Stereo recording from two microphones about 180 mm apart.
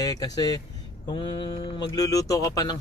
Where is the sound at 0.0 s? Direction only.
20° left (ahead or behind).